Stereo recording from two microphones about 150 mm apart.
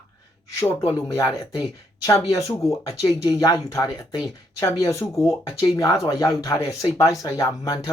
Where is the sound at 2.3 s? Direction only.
20° left (ahead or behind).